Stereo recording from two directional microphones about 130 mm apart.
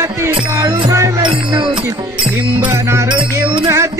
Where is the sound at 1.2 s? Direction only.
40° right (ahead or behind).